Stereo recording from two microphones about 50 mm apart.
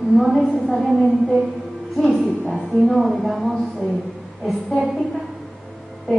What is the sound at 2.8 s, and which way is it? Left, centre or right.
Speech, centre.